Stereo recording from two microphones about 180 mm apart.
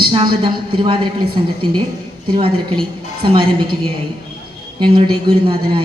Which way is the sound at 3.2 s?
25° right (ahead or behind).